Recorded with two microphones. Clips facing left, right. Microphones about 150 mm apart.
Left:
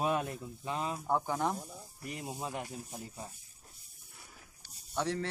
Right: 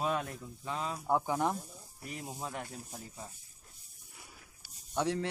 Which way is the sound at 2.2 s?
10° left (ahead or behind).